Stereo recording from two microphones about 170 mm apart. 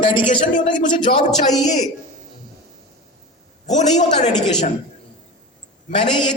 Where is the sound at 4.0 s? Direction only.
45° left (ahead or behind).